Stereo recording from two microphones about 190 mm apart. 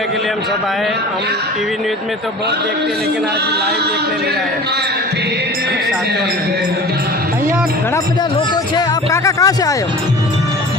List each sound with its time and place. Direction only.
9.2 s speech: 15° left (ahead or behind)